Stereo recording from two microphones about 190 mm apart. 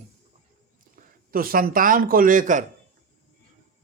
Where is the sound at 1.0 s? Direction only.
50° right (ahead or behind).